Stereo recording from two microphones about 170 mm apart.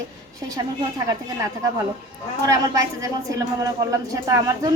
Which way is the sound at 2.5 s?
20° right (ahead or behind).